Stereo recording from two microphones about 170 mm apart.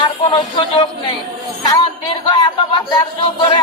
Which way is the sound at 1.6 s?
25° left (ahead or behind).